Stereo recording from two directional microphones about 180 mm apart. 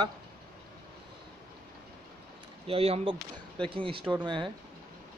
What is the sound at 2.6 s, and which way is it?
A man's voice, 35° right (ahead or behind).